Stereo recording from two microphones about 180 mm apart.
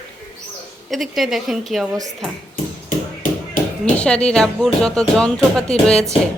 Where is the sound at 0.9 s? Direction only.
Centre (ahead or behind).